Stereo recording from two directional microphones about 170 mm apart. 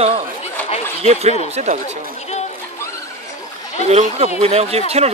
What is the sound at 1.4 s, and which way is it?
Speech, 40° right (ahead or behind).